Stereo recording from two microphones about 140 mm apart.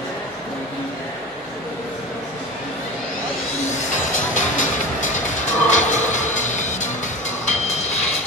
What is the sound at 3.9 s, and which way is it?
Music, 65° left (ahead or behind).